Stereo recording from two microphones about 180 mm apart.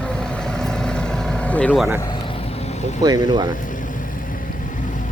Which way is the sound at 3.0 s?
20° right (ahead or behind).